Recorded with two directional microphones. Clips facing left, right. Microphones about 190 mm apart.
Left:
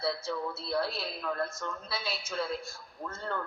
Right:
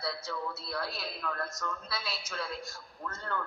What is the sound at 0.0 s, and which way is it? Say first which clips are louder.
A man's voice: left 4 dB; 25° left (ahead or behind).